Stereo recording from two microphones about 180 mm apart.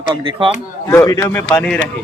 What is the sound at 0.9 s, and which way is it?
Speech, 15° left (ahead or behind).